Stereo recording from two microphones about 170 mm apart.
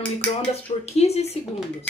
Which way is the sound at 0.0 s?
5° left (ahead or behind).